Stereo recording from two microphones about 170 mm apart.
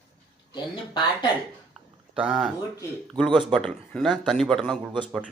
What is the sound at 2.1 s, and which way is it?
Speech, 5° right (ahead or behind).